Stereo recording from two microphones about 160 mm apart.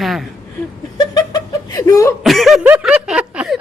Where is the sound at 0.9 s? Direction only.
25° left (ahead or behind).